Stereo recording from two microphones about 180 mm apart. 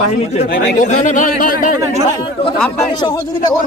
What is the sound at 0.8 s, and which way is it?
Speech, 40° left (ahead or behind).